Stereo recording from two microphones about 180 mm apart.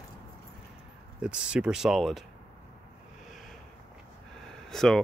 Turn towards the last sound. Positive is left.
turn(degrees=0)  # may be behind; listen again after turning